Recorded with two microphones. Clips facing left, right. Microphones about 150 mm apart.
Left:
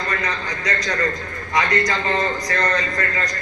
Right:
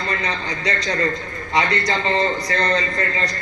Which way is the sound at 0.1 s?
30° right (ahead or behind).